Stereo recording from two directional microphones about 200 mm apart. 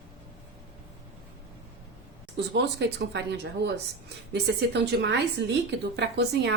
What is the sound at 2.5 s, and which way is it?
Speech, 55° right (ahead or behind).